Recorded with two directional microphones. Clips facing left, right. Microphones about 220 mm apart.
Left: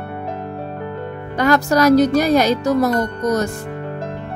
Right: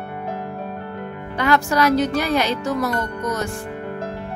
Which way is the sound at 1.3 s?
40° left (ahead or behind).